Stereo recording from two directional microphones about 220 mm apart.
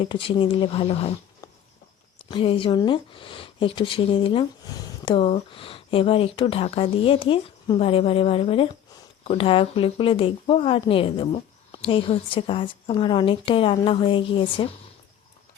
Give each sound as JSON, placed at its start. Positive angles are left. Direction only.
{"t": 0.0, "sound": "speech", "side_deg": 25}
{"t": 2.3, "sound": "speech", "side_deg": 25}